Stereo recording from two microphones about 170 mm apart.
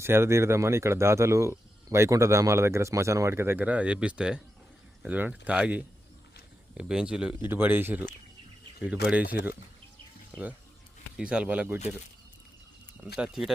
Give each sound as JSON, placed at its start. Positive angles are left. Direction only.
{"t": 0.0, "sound": "speech", "side_deg": -15}
{"t": 9.2, "sound": "speech", "side_deg": 65}
{"t": 11.2, "sound": "speech", "side_deg": -5}
{"t": 13.1, "sound": "speech", "side_deg": -5}